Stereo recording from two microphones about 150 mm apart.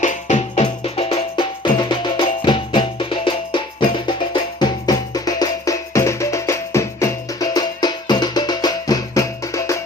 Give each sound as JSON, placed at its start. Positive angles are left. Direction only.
{"t": 0.0, "sound": "music", "side_deg": 55}